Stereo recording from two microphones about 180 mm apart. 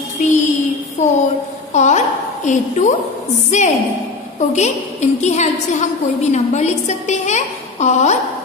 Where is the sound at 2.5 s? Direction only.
40° left (ahead or behind).